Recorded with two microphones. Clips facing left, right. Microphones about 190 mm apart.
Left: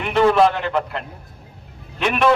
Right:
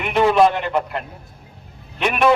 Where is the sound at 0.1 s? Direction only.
15° right (ahead or behind).